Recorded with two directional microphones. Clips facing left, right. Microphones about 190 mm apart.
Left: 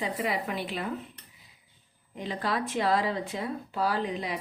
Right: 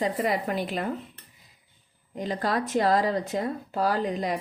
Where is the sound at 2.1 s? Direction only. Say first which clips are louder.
Right 4 dB; 40° right (ahead or behind).